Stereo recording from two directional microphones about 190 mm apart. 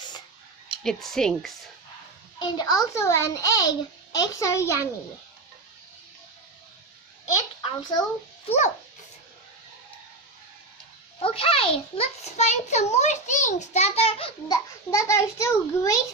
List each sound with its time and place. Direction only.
0.8 s speech: centre (ahead or behind)
2.3 s a child's voice: 25° left (ahead or behind)
7.6 s a child's voice: 20° left (ahead or behind)
8.5 s a child's voice: 40° left (ahead or behind)
11.2 s a child's voice: 30° left (ahead or behind)
14.9 s a child's voice: 15° left (ahead or behind)